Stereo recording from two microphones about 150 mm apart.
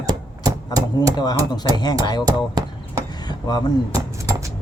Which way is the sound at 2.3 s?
25° right (ahead or behind).